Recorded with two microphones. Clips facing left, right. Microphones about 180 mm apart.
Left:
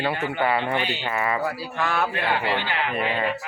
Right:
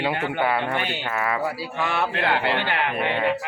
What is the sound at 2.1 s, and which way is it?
Speech, 70° right (ahead or behind).